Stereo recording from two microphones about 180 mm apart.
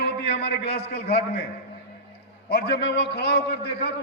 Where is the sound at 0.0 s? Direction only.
65° left (ahead or behind).